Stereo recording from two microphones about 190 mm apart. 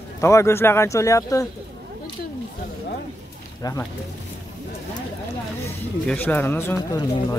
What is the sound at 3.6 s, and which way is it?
Speech, 20° left (ahead or behind).